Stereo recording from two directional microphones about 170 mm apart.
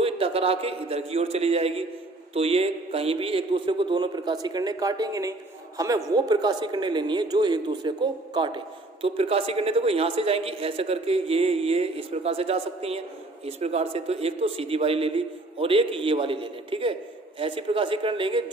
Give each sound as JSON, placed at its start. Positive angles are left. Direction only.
{"t": 0.0, "sound": "a man's voice", "side_deg": -35}